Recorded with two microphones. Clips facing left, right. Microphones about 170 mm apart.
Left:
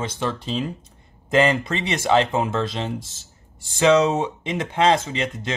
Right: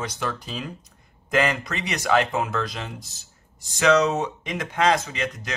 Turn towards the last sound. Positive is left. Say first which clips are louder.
# left 3 dB
turn(degrees=25)  # may be behind; listen again after turning